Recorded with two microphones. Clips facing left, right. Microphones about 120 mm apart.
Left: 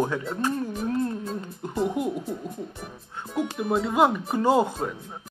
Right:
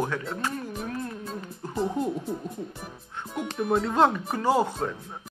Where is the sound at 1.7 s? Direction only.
Centre (ahead or behind).